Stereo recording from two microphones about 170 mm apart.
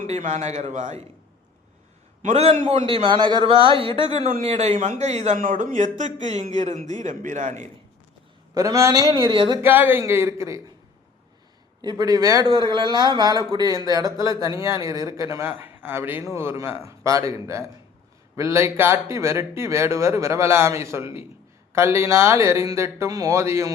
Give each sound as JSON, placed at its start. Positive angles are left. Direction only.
{"t": 0.0, "sound": "a man's voice", "side_deg": -45}
{"t": 2.2, "sound": "a man's voice", "side_deg": -40}
{"t": 8.5, "sound": "a man's voice", "side_deg": -20}
{"t": 9.1, "sound": "a man's voice", "side_deg": -30}
{"t": 9.6, "sound": "speech", "side_deg": -10}
{"t": 11.8, "sound": "a man's voice", "side_deg": -25}